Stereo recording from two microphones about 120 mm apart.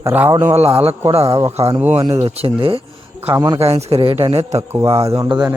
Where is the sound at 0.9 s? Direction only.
55° right (ahead or behind).